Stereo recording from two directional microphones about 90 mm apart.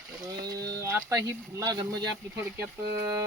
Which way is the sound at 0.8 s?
35° right (ahead or behind).